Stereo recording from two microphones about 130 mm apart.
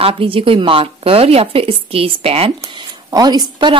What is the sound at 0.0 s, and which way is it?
A woman's voice, 45° right (ahead or behind).